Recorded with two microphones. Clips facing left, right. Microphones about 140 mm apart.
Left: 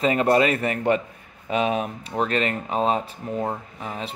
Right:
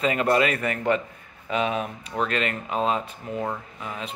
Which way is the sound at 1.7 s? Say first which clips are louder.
Left 3 dB; 45° left (ahead or behind).